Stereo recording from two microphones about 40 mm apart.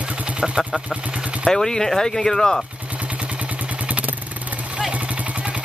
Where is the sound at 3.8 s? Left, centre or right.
Right.